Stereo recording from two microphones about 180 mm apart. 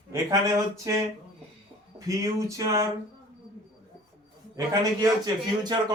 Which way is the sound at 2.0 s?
20° right (ahead or behind).